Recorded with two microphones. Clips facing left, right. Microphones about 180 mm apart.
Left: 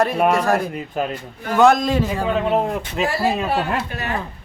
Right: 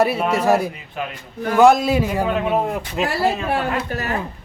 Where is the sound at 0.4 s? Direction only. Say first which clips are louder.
Right 2 dB; 10° right (ahead or behind).